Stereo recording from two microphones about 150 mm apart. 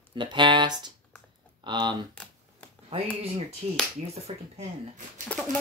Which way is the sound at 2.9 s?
45° right (ahead or behind).